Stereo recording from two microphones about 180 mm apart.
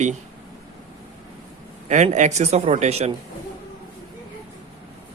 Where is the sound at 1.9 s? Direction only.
40° right (ahead or behind).